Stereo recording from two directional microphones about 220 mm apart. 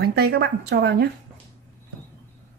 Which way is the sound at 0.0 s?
45° right (ahead or behind).